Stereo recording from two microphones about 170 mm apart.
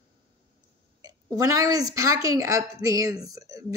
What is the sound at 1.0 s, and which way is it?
A woman's voice, 20° right (ahead or behind).